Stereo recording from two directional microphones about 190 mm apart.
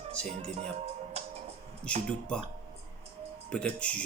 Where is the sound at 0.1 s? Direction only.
5° left (ahead or behind).